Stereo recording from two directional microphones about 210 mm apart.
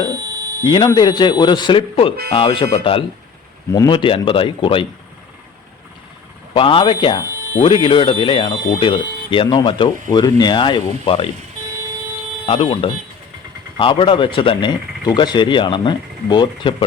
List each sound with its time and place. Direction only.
0.1 s a sound: 15° right (ahead or behind)
0.6 s speech: 20° left (ahead or behind)
6.5 s speech: 25° left (ahead or behind)
12.5 s speech: 25° left (ahead or behind)